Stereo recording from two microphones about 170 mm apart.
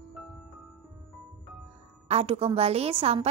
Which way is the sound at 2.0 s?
35° right (ahead or behind).